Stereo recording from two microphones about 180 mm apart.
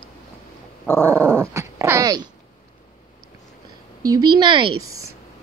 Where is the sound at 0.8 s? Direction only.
10° left (ahead or behind).